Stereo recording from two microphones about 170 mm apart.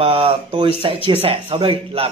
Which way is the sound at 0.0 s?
35° right (ahead or behind).